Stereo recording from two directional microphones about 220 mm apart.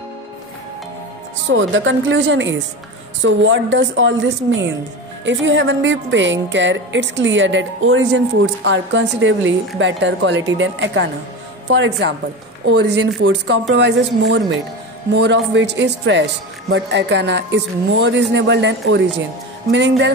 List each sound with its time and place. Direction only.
1.5 s a woman's voice: 60° right (ahead or behind)